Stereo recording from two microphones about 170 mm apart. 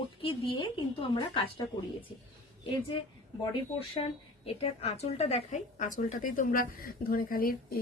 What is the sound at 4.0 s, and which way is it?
A woman's voice, 30° left (ahead or behind).